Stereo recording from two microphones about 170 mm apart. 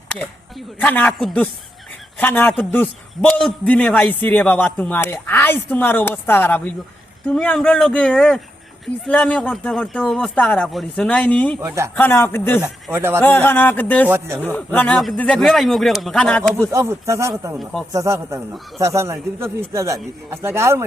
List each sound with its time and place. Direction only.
0.8 s a man's voice: 10° left (ahead or behind)
12.9 s speech: 15° right (ahead or behind)
13.2 s a man's voice: 10° left (ahead or behind)
16.7 s speech: 15° right (ahead or behind)